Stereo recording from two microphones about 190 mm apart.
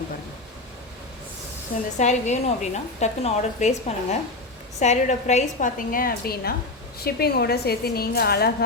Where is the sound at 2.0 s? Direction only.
40° left (ahead or behind).